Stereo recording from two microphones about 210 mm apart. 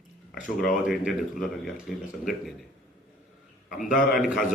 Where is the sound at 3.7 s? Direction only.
40° left (ahead or behind).